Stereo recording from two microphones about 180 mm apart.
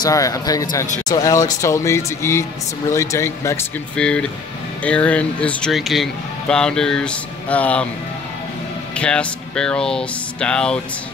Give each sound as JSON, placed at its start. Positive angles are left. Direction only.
{"t": 0.0, "sound": "speech", "side_deg": 20}
{"t": 8.9, "sound": "speech", "side_deg": 5}